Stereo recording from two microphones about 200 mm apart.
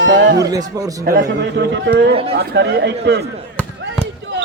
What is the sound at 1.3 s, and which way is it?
Speech, 60° right (ahead or behind).